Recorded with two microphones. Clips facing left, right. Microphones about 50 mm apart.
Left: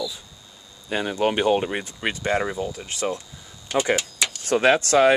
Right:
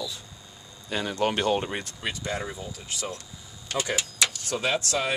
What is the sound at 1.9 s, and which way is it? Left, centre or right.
Speech, left.